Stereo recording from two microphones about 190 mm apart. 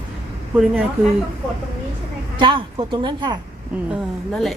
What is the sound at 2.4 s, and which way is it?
Speech, 25° right (ahead or behind).